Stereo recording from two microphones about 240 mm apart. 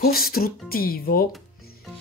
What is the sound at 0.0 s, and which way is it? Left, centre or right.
Speech, left.